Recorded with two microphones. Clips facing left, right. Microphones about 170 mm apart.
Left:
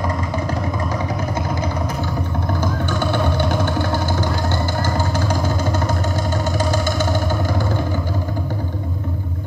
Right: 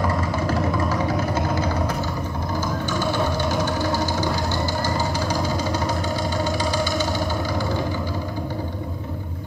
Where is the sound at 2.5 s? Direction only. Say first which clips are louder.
Left 2 dB; 60° left (ahead or behind).